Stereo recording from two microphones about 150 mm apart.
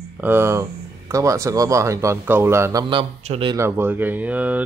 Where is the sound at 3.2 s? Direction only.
45° right (ahead or behind).